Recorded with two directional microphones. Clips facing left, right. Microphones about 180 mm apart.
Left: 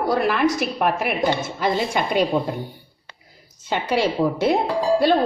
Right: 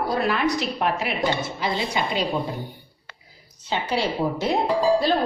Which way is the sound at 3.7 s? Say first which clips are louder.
Left 3 dB; 55° left (ahead or behind).